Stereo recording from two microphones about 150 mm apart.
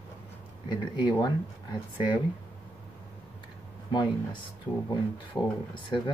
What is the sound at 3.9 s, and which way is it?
Speech, 30° left (ahead or behind).